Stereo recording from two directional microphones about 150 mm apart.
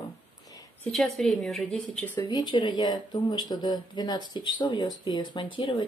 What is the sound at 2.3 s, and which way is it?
Speech, 30° left (ahead or behind).